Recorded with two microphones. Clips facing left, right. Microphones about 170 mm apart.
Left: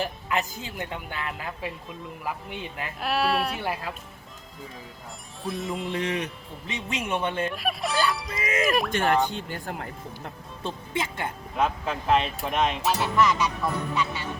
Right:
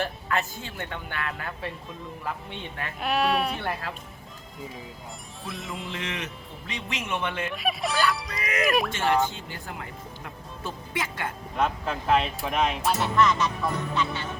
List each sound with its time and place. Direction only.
0.0 s speech: 15° left (ahead or behind)
5.4 s speech: centre (ahead or behind)
5.9 s speech: 35° left (ahead or behind)
7.5 s speech: centre (ahead or behind)
8.4 s speech: 25° left (ahead or behind)
8.6 s speech: centre (ahead or behind)
9.5 s speech: 45° left (ahead or behind)
10.6 s speech: 25° left (ahead or behind)
11.5 s speech: centre (ahead or behind)